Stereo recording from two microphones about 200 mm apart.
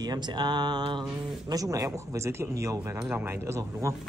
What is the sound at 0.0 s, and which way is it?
A man's voice, 20° right (ahead or behind).